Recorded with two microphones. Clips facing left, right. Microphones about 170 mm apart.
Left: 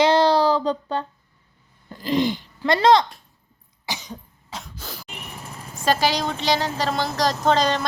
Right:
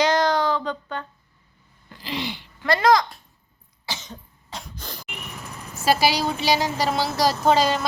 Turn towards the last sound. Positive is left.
turn(degrees=-5)  # may be behind; listen again after turning